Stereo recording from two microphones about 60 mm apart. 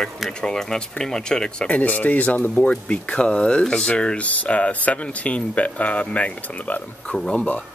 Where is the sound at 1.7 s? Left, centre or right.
Left.